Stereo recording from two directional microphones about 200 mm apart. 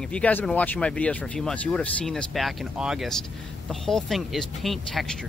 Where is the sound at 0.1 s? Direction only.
10° left (ahead or behind).